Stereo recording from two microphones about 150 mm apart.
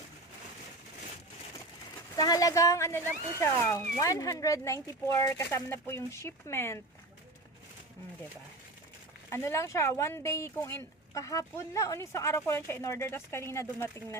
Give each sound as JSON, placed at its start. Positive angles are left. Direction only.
{"t": 2.1, "sound": "speech", "side_deg": 25}
{"t": 9.3, "sound": "speech", "side_deg": 15}